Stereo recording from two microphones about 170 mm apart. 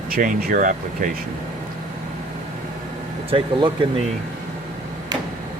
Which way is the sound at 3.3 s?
30° right (ahead or behind).